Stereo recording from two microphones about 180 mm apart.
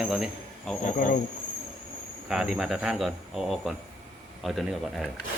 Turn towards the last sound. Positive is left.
turn(degrees=0)  # may be behind; listen again after turning